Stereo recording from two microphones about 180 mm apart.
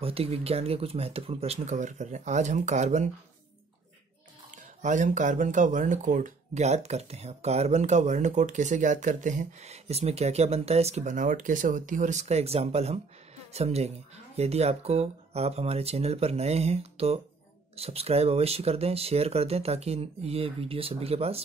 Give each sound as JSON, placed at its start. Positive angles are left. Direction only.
{"t": 0.0, "sound": "speech", "side_deg": -35}
{"t": 4.5, "sound": "speech", "side_deg": -45}